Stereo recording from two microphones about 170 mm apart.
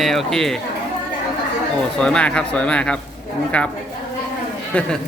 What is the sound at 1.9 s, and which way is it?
Speech, 5° left (ahead or behind).